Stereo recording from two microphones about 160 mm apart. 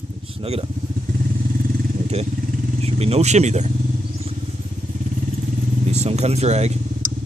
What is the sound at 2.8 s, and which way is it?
Speech, 40° right (ahead or behind).